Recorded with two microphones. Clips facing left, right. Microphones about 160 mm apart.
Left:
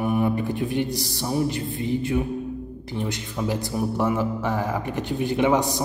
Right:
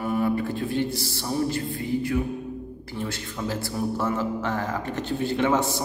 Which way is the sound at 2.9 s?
15° left (ahead or behind).